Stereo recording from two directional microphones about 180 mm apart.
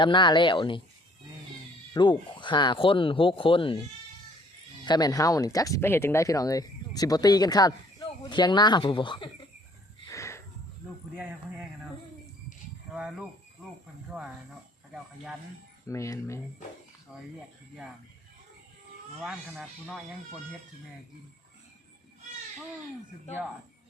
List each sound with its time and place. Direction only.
0.0 s speech: 25° left (ahead or behind)
1.9 s speech: 25° left (ahead or behind)
4.9 s speech: 20° left (ahead or behind)
10.1 s a sound: 15° left (ahead or behind)
11.2 s a sound: 10° right (ahead or behind)
12.9 s speech: 5° right (ahead or behind)
15.9 s speech: 15° left (ahead or behind)
19.2 s speech: centre (ahead or behind)